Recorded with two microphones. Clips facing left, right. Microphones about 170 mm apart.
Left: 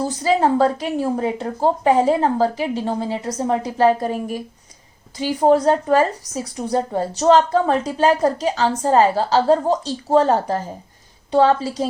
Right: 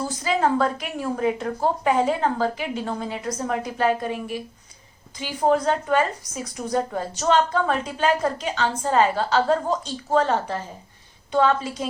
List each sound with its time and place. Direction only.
0.0 s a woman's voice: 35° left (ahead or behind)